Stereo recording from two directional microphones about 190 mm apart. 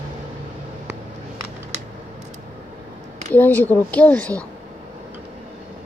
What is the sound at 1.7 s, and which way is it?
Typing, 40° right (ahead or behind).